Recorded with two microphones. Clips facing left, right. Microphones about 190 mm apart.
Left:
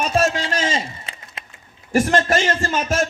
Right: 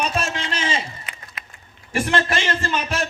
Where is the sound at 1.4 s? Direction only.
30° left (ahead or behind).